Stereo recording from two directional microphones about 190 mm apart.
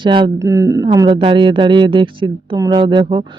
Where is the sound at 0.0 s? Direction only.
25° right (ahead or behind).